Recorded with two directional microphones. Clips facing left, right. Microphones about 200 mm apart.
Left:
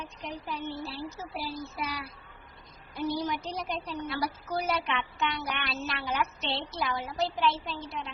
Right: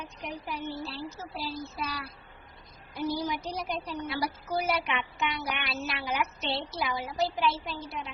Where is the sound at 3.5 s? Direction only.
5° right (ahead or behind).